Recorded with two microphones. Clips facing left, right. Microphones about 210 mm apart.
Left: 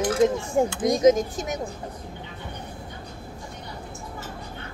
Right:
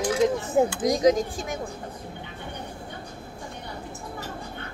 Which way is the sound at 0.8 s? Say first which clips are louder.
Left 2 dB; 20° left (ahead or behind).